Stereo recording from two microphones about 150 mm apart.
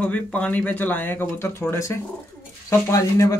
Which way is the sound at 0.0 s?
10° left (ahead or behind).